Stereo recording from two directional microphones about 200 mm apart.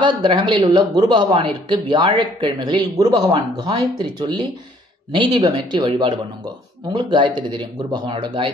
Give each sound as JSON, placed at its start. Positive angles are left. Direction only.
{"t": 0.0, "sound": "a man's voice", "side_deg": -25}